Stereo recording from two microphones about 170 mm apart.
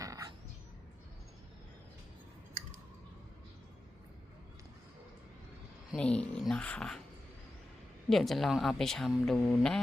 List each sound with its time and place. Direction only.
0.0 s a sound: 20° right (ahead or behind)
6.0 s speech: 5° left (ahead or behind)
8.1 s speech: centre (ahead or behind)